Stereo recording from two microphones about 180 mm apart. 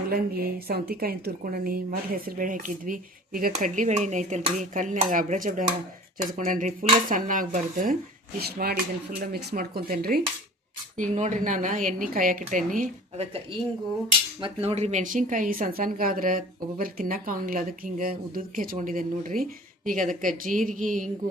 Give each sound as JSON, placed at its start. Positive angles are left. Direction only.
{"t": 0.1, "sound": "speech", "side_deg": -60}
{"t": 8.4, "sound": "speech", "side_deg": -60}
{"t": 10.9, "sound": "speech", "side_deg": -45}
{"t": 14.4, "sound": "speech", "side_deg": -35}